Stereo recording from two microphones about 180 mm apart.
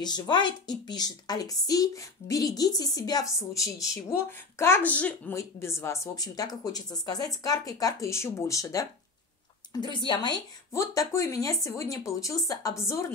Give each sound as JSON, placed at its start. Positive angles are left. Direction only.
{"t": 0.0, "sound": "a woman's voice", "side_deg": 25}